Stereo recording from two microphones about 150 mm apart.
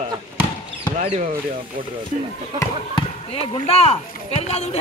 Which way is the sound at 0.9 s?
50° right (ahead or behind).